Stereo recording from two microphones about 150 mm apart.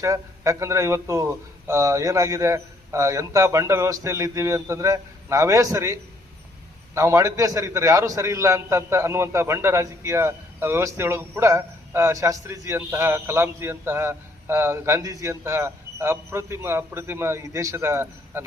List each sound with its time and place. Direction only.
0.0 s a man's voice: 20° right (ahead or behind)